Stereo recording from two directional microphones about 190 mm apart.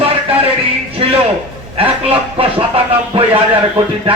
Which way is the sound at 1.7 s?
30° right (ahead or behind).